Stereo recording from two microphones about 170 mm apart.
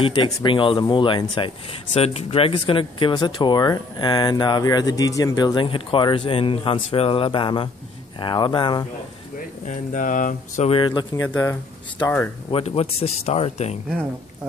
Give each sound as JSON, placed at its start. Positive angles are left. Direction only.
{"t": 0.0, "sound": "speech", "side_deg": 30}
{"t": 9.7, "sound": "speech", "side_deg": 50}
{"t": 10.7, "sound": "speech", "side_deg": 30}
{"t": 11.2, "sound": "speech", "side_deg": 10}
{"t": 12.4, "sound": "speech", "side_deg": 35}